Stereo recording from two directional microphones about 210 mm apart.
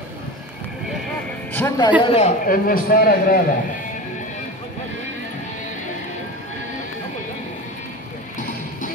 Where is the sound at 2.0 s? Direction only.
30° left (ahead or behind).